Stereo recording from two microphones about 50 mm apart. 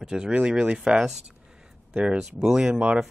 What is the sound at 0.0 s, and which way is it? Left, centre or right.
Speech, centre.